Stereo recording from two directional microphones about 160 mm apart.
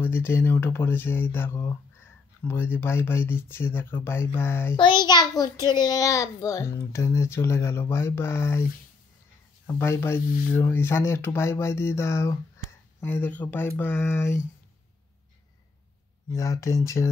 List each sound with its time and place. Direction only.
0.0 s a child's voice: 15° left (ahead or behind)
4.7 s a child's voice: 30° left (ahead or behind)
9.8 s a child's voice: 15° left (ahead or behind)
16.3 s speech: 20° left (ahead or behind)